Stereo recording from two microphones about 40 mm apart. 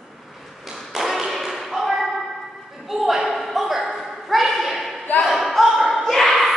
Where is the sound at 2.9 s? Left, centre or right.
Centre.